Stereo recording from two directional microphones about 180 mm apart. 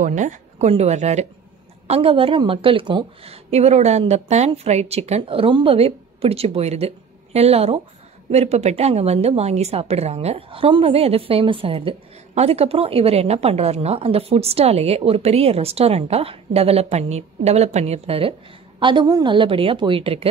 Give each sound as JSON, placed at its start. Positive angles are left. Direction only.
{"t": 0.0, "sound": "a woman's voice", "side_deg": -45}